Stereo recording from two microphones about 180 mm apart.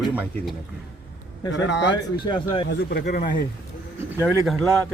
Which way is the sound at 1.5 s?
80° left.